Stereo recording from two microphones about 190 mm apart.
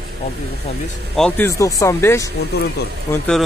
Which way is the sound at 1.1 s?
5° left (ahead or behind).